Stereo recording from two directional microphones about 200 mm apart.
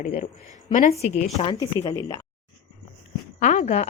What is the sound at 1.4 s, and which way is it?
Speech, 25° left (ahead or behind).